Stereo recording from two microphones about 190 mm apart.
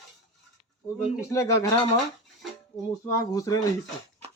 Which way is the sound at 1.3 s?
15° left (ahead or behind).